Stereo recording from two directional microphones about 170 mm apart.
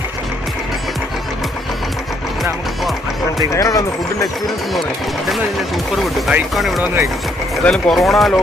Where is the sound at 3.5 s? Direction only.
20° left (ahead or behind).